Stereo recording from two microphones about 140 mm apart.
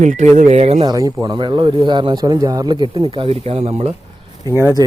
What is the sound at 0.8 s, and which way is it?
Speech, 25° right (ahead or behind).